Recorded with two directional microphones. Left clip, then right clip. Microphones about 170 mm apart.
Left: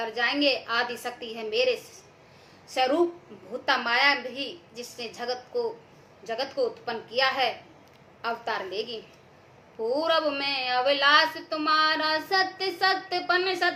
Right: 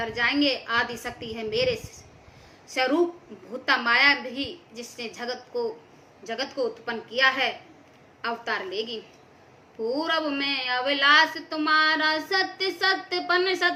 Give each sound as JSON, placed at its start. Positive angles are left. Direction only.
{"t": 0.0, "sound": "a woman's voice", "side_deg": -20}
{"t": 2.7, "sound": "a woman's voice", "side_deg": -15}